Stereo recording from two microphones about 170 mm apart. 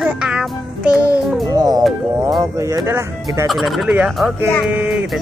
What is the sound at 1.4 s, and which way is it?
Speech, 20° right (ahead or behind).